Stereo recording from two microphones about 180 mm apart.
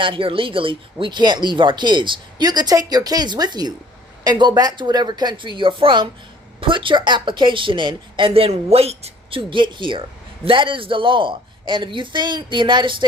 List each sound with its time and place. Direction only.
0.0 s speech: 30° right (ahead or behind)